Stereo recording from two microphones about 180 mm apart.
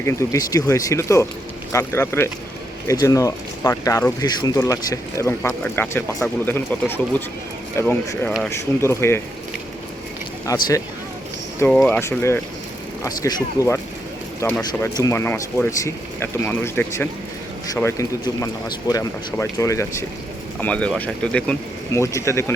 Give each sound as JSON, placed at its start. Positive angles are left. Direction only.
{"t": 0.0, "sound": "speech", "side_deg": 15}
{"t": 10.4, "sound": "speech", "side_deg": 20}
{"t": 11.6, "sound": "speech", "side_deg": 5}